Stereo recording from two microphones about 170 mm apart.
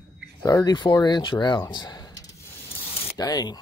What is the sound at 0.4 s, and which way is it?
Speech, 25° left (ahead or behind).